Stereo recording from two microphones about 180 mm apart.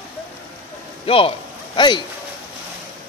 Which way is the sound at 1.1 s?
30° left (ahead or behind).